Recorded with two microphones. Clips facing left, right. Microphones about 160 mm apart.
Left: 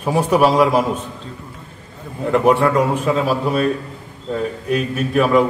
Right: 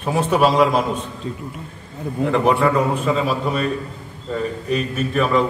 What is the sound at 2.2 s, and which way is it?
A man's voice, 5° left (ahead or behind).